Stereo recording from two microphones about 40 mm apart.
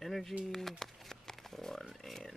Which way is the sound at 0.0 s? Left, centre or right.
Centre.